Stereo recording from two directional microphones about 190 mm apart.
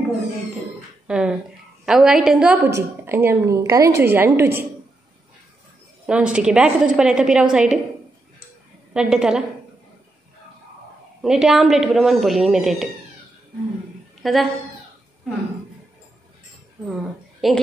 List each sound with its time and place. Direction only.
1.0 s a woman's voice: 5° right (ahead or behind)
6.0 s a woman's voice: 5° right (ahead or behind)
8.9 s a woman's voice: 5° right (ahead or behind)
11.2 s a woman's voice: centre (ahead or behind)
14.2 s a woman's voice: centre (ahead or behind)
16.9 s a woman's voice: centre (ahead or behind)